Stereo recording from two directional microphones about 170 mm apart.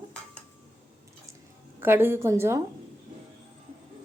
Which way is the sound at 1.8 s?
15° right (ahead or behind).